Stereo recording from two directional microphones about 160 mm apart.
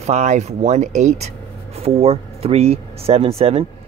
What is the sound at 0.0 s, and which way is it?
Speech, 45° right (ahead or behind).